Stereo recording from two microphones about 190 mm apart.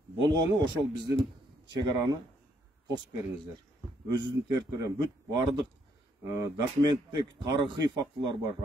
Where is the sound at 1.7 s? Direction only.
20° right (ahead or behind).